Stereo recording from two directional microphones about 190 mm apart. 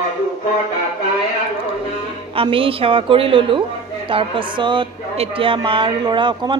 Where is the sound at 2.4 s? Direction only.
30° right (ahead or behind).